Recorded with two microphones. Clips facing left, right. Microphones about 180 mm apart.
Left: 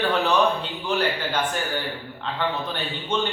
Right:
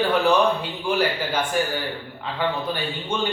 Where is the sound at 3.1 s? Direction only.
10° right (ahead or behind).